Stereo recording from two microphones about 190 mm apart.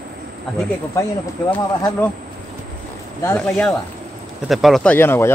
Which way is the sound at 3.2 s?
5° left (ahead or behind).